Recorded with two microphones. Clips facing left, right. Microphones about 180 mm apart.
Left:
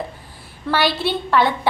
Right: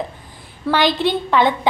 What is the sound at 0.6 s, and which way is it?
A woman's voice, 15° right (ahead or behind).